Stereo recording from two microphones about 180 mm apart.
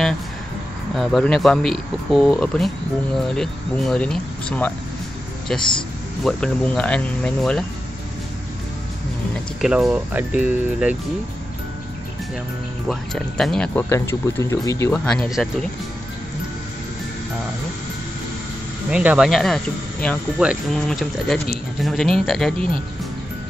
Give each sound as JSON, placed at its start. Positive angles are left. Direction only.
{"t": 0.9, "sound": "speech", "side_deg": 0}
{"t": 5.6, "sound": "speech", "side_deg": 25}
{"t": 6.2, "sound": "speech", "side_deg": 5}
{"t": 9.3, "sound": "speech", "side_deg": -5}
{"t": 12.8, "sound": "speech", "side_deg": 0}
{"t": 15.0, "sound": "speech", "side_deg": 0}
{"t": 18.9, "sound": "speech", "side_deg": -5}